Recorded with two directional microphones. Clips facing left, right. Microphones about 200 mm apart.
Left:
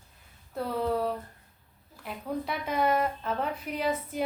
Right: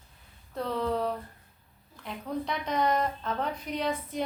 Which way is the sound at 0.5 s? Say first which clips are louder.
Left 1 dB; 5° left (ahead or behind).